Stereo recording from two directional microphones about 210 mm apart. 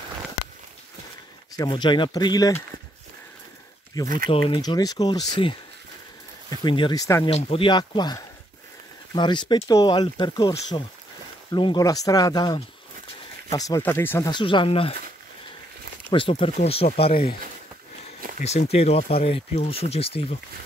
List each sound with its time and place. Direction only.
1.6 s speech: 20° left (ahead or behind)
3.9 s speech: 15° left (ahead or behind)
6.6 s speech: 20° left (ahead or behind)
7.2 s speech: 30° left (ahead or behind); by 14.3 s 10° left (ahead or behind)
14.3 s speech: 25° left (ahead or behind)
16.1 s speech: 25° left (ahead or behind)
18.4 s speech: 30° left (ahead or behind)